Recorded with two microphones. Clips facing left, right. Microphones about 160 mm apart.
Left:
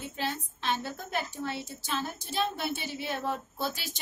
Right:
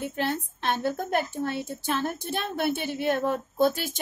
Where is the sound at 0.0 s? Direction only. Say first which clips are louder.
Right 6 dB; 60° right (ahead or behind).